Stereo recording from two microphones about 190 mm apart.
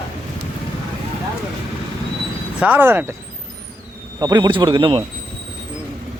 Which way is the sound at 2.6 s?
10° right (ahead or behind).